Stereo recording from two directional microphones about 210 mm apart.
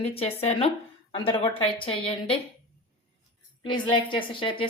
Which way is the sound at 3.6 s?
25° left (ahead or behind).